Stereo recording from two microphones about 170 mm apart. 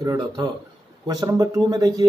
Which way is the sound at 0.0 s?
20° right (ahead or behind).